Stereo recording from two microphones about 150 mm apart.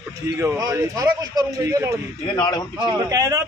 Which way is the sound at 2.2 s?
30° left (ahead or behind).